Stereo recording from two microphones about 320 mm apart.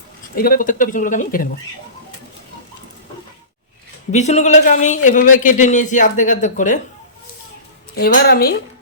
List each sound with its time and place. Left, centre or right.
0.3 s speech: left
4.1 s speech: left
7.9 s speech: left